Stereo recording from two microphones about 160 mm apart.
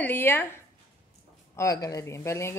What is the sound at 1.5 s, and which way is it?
A woman's voice, 20° left (ahead or behind).